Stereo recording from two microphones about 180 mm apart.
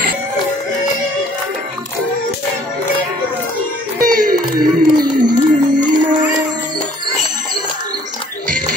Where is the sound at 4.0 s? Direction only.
50° right (ahead or behind).